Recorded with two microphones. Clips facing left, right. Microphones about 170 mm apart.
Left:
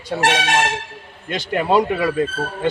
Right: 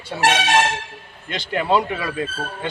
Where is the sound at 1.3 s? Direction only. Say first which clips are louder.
Left 2 dB; 45° left (ahead or behind).